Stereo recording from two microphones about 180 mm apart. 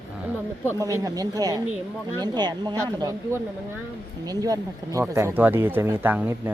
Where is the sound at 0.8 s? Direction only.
20° right (ahead or behind).